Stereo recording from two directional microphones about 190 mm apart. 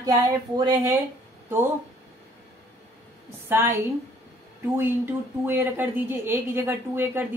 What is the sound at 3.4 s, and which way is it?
Speech, 10° right (ahead or behind).